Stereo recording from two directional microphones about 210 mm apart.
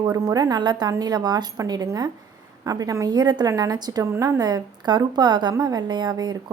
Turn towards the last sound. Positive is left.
turn(degrees=-20)  # may be behind; listen again after turning